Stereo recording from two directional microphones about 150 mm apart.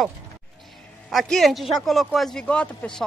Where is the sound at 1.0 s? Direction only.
Centre (ahead or behind).